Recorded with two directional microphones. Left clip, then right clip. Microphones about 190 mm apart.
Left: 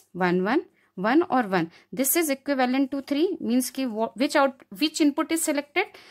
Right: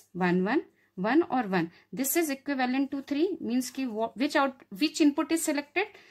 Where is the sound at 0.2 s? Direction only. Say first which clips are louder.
Left 4 dB; 30° left (ahead or behind).